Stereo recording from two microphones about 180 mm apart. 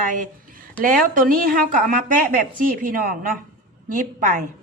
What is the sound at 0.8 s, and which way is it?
A woman's voice, 50° right (ahead or behind).